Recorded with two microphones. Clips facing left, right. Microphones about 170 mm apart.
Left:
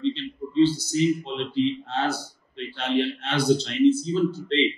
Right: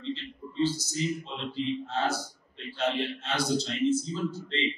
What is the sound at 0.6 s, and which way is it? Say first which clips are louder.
A man's voice: left 9 dB; 60° left (ahead or behind).